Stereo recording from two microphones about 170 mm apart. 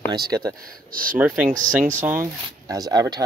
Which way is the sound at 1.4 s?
50° right (ahead or behind).